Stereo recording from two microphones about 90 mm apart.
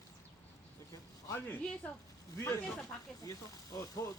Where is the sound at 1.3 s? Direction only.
20° left (ahead or behind).